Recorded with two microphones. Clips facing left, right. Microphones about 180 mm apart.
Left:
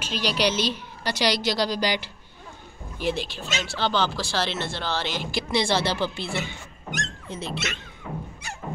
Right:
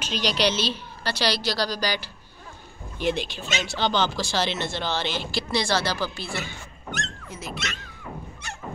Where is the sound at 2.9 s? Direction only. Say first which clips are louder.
Right 1 dB; 5° left (ahead or behind); by 7.4 s 20° left (ahead or behind).